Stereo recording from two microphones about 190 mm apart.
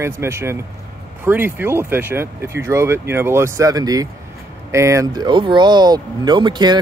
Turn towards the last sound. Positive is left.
turn(degrees=-20)  # may be behind; listen again after turning